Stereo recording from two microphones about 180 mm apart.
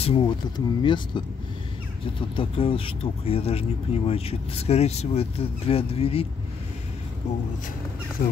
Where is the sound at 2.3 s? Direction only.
30° left (ahead or behind).